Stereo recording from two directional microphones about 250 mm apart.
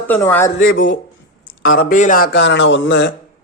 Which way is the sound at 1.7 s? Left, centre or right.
Left.